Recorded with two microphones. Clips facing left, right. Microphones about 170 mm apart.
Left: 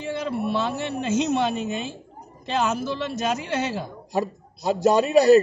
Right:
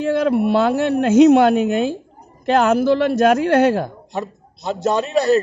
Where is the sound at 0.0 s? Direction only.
70° right (ahead or behind).